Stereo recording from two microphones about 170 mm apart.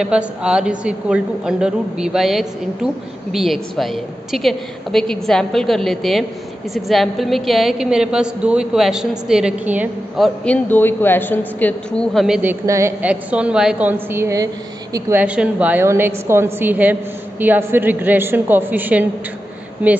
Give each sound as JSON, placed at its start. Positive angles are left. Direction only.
{"t": 0.0, "sound": "a woman's voice", "side_deg": -5}
{"t": 12.4, "sound": "a woman's voice", "side_deg": -15}
{"t": 15.1, "sound": "a woman's voice", "side_deg": -5}